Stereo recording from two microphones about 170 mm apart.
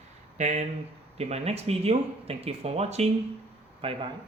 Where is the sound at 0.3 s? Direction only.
40° right (ahead or behind).